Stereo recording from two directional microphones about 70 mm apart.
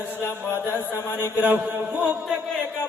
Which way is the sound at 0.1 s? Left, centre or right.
Left.